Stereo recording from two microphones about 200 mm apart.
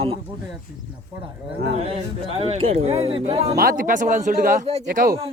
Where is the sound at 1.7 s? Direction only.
30° right (ahead or behind).